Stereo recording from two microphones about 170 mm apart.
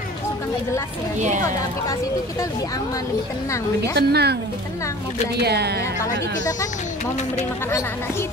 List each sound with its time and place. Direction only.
3.9 s speech: 75° right (ahead or behind)
5.4 s speech: 75° right (ahead or behind)